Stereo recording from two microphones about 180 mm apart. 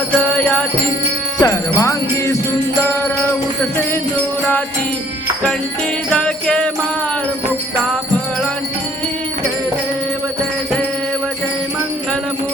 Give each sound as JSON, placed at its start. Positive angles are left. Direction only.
{"t": 0.2, "sound": "music", "side_deg": 5}
{"t": 1.4, "sound": "music", "side_deg": 15}
{"t": 6.1, "sound": "jingle bell", "side_deg": 5}